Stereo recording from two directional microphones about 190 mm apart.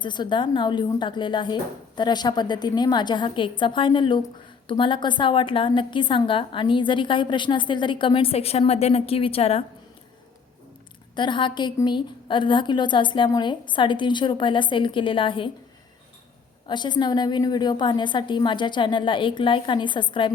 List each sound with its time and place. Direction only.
0.0 s a woman's voice: 25° left (ahead or behind)
11.1 s a woman's voice: 25° left (ahead or behind)
16.6 s a woman's voice: 25° left (ahead or behind)